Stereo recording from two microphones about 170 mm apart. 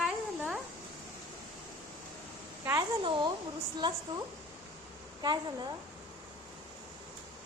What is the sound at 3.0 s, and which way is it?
Speech, 30° right (ahead or behind).